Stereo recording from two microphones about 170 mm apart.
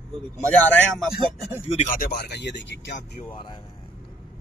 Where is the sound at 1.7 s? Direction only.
40° left (ahead or behind).